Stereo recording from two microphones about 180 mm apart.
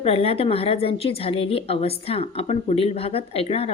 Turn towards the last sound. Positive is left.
turn(degrees=35)  # may be behind; listen again after turning